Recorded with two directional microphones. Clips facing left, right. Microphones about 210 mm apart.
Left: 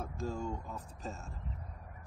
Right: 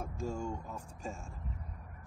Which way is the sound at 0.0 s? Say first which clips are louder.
Even; 10° right (ahead or behind).